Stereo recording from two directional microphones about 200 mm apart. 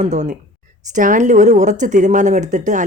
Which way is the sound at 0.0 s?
35° right (ahead or behind).